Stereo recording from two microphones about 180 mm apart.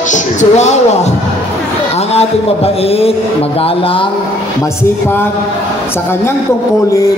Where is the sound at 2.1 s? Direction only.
35° left (ahead or behind).